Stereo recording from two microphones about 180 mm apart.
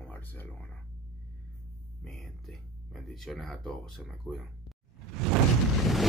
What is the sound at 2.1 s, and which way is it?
Speech, centre (ahead or behind).